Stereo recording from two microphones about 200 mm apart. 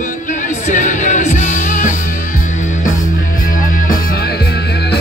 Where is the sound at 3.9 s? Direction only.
50° left (ahead or behind).